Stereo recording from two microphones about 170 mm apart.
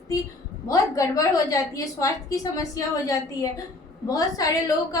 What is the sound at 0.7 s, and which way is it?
A woman's voice, 20° left (ahead or behind).